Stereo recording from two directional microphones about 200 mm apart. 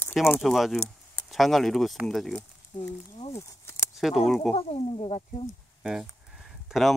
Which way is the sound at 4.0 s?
Centre (ahead or behind).